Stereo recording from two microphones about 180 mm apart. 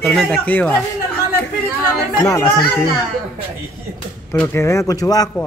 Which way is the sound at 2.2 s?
20° left (ahead or behind).